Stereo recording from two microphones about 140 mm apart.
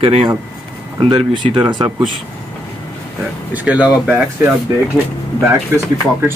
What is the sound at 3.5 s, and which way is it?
Speech, 10° right (ahead or behind).